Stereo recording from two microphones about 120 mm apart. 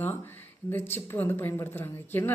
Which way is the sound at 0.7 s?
15° left (ahead or behind).